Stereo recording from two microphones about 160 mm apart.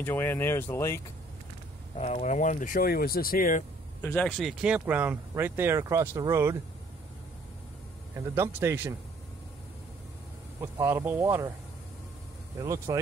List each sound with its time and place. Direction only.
0.0 s speech: 15° left (ahead or behind)
2.0 s speech: 45° left (ahead or behind); by 3.6 s 60° left (ahead or behind)
4.0 s speech: 10° left (ahead or behind)
4.4 s speech: 5° right (ahead or behind); by 6.6 s 20° right (ahead or behind)
8.2 s speech: 15° right (ahead or behind)
10.6 s speech: 15° right (ahead or behind)
12.5 s speech: 20° right (ahead or behind)